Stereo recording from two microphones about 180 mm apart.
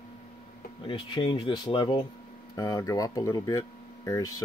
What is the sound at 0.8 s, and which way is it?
Speech, 25° left (ahead or behind).